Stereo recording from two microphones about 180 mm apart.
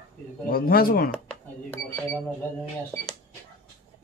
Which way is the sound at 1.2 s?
5° left (ahead or behind).